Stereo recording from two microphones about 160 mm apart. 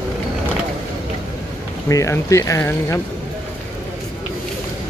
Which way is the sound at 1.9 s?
20° left (ahead or behind).